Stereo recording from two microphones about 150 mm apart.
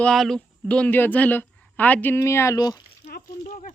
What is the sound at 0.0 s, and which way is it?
A woman's voice, 5° left (ahead or behind).